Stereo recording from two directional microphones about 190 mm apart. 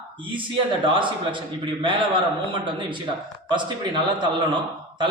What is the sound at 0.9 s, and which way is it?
A man's voice, 25° right (ahead or behind).